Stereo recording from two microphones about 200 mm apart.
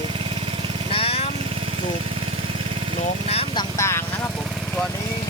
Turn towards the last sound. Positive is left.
turn(degrees=15)  # may be behind; listen again after turning